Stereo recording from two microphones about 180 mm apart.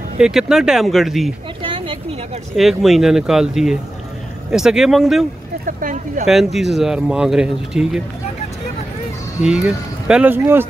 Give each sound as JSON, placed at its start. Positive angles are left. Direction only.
{"t": 0.2, "sound": "speech", "side_deg": 0}
{"t": 1.6, "sound": "a sound", "side_deg": -30}
{"t": 2.5, "sound": "speech", "side_deg": 0}
{"t": 5.7, "sound": "a sound", "side_deg": -50}
{"t": 6.2, "sound": "speech", "side_deg": 0}
{"t": 10.0, "sound": "speech", "side_deg": -5}